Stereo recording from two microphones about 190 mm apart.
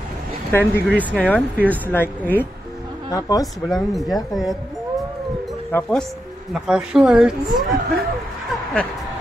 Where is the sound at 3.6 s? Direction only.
Centre (ahead or behind).